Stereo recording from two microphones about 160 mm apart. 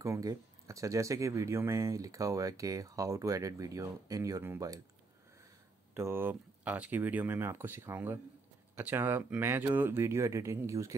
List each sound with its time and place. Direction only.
0.0 s speech: 20° right (ahead or behind)
5.9 s speech: 15° right (ahead or behind)